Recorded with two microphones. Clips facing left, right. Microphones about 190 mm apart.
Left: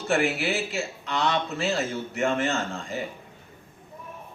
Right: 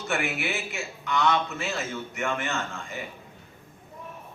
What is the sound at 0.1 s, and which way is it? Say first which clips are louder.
A man's voice: left 5 dB; 35° left (ahead or behind).